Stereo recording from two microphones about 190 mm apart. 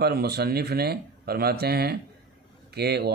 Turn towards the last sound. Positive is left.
turn(degrees=-60)  # may be behind; listen again after turning